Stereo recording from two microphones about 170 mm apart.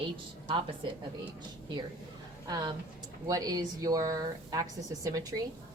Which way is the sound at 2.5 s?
25° right (ahead or behind).